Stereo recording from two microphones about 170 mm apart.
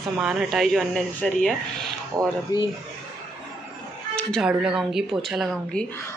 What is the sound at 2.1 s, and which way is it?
Speech, 20° right (ahead or behind).